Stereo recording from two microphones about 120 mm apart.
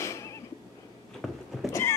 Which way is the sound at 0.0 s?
25° left (ahead or behind).